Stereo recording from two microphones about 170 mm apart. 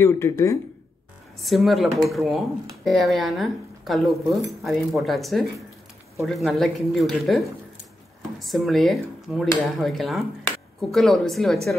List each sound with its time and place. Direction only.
0.0 s speech: 15° left (ahead or behind)
1.4 s speech: centre (ahead or behind)